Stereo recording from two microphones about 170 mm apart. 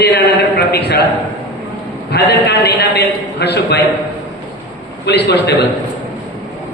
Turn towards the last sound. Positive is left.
turn(degrees=80)